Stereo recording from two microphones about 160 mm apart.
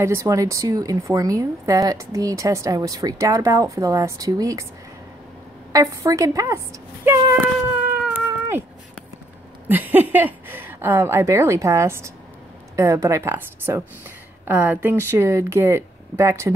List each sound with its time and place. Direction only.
0.0 s speech: 20° right (ahead or behind)
5.7 s speech: 20° right (ahead or behind)
8.0 s cat: 10° right (ahead or behind)
9.7 s a woman's voice: 10° right (ahead or behind)